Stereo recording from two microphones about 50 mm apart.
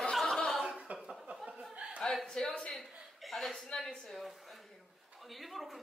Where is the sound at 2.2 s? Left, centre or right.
Centre.